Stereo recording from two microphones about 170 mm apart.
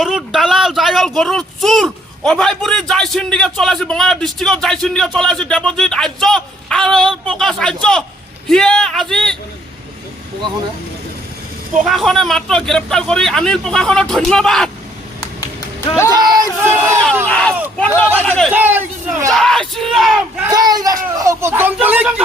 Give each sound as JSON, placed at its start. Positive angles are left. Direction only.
{"t": 0.0, "sound": "speech", "side_deg": -5}
{"t": 11.8, "sound": "speech", "side_deg": 0}
{"t": 16.1, "sound": "speech", "side_deg": -25}
{"t": 16.6, "sound": "speech", "side_deg": -10}
{"t": 17.2, "sound": "speech", "side_deg": 5}
{"t": 18.5, "sound": "speech", "side_deg": -10}
{"t": 19.3, "sound": "speech", "side_deg": 0}
{"t": 20.5, "sound": "speech", "side_deg": -25}